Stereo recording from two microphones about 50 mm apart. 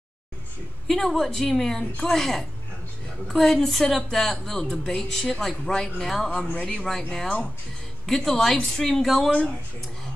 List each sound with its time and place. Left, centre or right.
0.8 s a woman's voice: centre
8.1 s a woman's voice: centre